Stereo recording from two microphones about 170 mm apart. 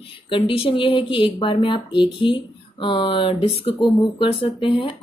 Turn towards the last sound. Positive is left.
turn(degrees=30)  # may be behind; listen again after turning